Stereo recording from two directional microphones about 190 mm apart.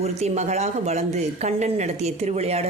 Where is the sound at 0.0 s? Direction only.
35° right (ahead or behind).